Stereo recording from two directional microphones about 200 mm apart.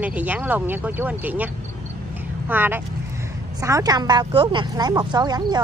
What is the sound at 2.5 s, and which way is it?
Speech, 10° right (ahead or behind).